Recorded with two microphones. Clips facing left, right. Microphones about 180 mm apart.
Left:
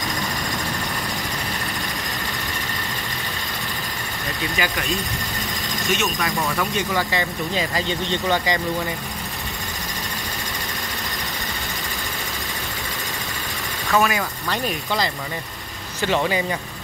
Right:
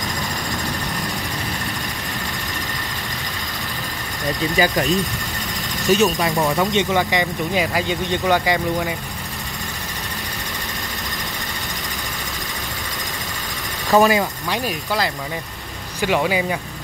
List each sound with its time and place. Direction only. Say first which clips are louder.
4.6 s speech: right 7 dB; 35° right (ahead or behind)
5.9 s speech: right 8 dB; 35° right (ahead or behind); by 8.9 s 10° right (ahead or behind)
13.9 s speech: right 6 dB; 30° right (ahead or behind)
14.5 s speech: left 2 dB; 5° right (ahead or behind)